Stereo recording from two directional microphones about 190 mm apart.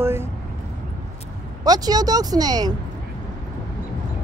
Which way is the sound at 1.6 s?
20° right (ahead or behind).